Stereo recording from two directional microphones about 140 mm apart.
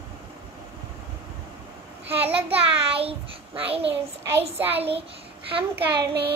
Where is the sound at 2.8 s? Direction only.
40° right (ahead or behind).